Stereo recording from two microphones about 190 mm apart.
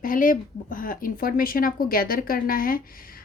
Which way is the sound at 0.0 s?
45° left (ahead or behind).